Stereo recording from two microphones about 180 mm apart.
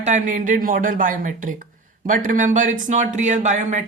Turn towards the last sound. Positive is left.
turn(degrees=-40)  # may be behind; listen again after turning